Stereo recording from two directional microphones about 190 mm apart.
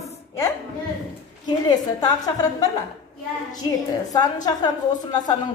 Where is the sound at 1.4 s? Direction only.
20° left (ahead or behind).